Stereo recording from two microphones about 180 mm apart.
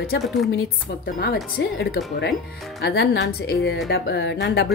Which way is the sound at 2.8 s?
75° left (ahead or behind).